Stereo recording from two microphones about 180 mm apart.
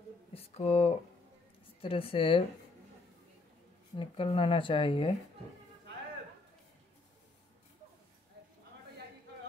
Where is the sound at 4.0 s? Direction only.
30° left (ahead or behind).